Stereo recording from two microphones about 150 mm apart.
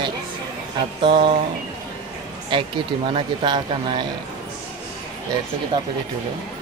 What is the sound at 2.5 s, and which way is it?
A woman's voice, 30° right (ahead or behind).